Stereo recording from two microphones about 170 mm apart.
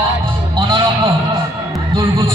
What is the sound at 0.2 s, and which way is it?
Music, 25° right (ahead or behind).